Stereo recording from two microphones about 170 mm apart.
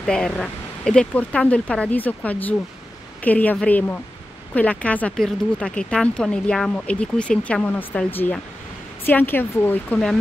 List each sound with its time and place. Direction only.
0.0 s speech: 5° left (ahead or behind)